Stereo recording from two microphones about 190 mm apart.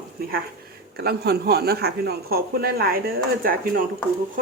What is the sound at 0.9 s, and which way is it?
Speech, 55° right (ahead or behind).